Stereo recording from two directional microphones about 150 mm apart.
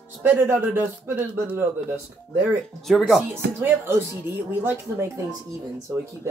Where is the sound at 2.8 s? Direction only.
Centre (ahead or behind).